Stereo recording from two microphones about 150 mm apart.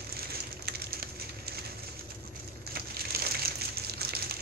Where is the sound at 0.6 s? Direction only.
90° right.